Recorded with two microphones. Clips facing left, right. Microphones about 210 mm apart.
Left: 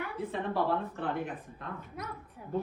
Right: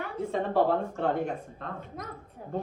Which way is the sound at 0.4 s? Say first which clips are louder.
Right 6 dB; 65° right (ahead or behind).